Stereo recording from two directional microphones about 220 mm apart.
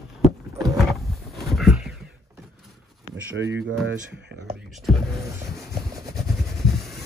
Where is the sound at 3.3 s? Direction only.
55° right (ahead or behind).